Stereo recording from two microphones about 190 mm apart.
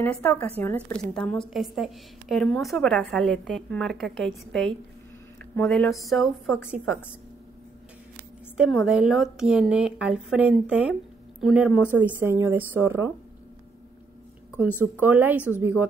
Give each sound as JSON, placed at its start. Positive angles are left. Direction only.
{"t": 0.0, "sound": "a woman's voice", "side_deg": 10}
{"t": 8.5, "sound": "a woman's voice", "side_deg": 0}
{"t": 15.0, "sound": "speech", "side_deg": -10}